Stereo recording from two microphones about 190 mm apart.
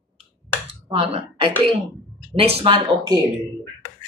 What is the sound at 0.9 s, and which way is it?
A woman's voice, 30° right (ahead or behind).